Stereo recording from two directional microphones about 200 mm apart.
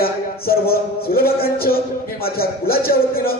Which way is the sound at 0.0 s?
50° left (ahead or behind).